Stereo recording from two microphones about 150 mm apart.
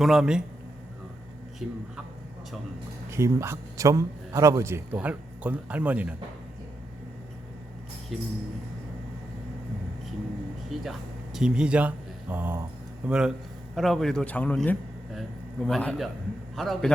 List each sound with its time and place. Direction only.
0.0 s a man's voice: 5° right (ahead or behind)
1.6 s a man's voice: 5° right (ahead or behind)
3.1 s a man's voice: 20° right (ahead or behind)
8.1 s a man's voice: centre (ahead or behind)
10.7 s a sound: centre (ahead or behind)
11.3 s a man's voice: 5° right (ahead or behind)